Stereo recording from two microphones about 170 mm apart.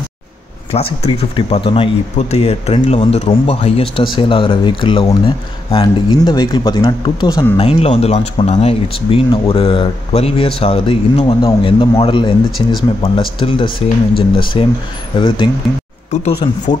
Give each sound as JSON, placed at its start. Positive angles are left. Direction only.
{"t": 0.7, "sound": "speech", "side_deg": 35}
{"t": 7.5, "sound": "speech", "side_deg": 35}
{"t": 12.4, "sound": "speech", "side_deg": 0}
{"t": 13.4, "sound": "speech", "side_deg": 30}
{"t": 16.1, "sound": "speech", "side_deg": 40}